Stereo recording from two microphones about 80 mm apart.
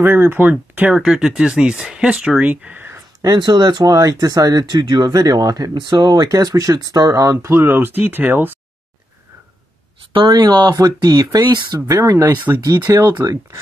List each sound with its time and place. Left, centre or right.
0.0 s speech: right
0.9 s speech: centre; by 3.0 s right
3.2 s speech: right
5.8 s speech: right
10.1 s speech: right
12.6 s speech: right